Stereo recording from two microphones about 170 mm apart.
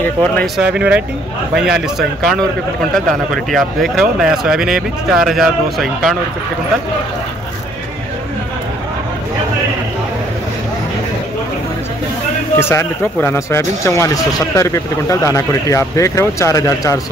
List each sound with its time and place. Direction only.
0.0 s speech: 10° left (ahead or behind)
0.6 s speech: 5° right (ahead or behind)
12.5 s speech: 15° left (ahead or behind)